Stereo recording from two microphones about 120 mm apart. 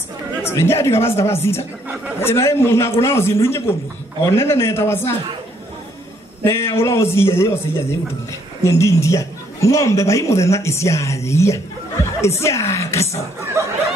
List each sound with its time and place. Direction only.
0.4 s a man's voice: 20° left (ahead or behind)
6.4 s a man's voice: 20° left (ahead or behind)